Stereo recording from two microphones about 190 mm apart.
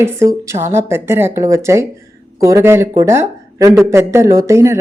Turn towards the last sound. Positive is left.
turn(degrees=-15)  # may be behind; listen again after turning